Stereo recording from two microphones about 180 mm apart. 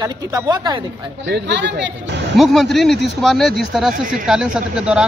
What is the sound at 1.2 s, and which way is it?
Speech, 75° right (ahead or behind).